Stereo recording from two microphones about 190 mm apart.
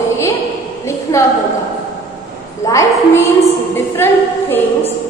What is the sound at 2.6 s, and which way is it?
Speech, 15° left (ahead or behind).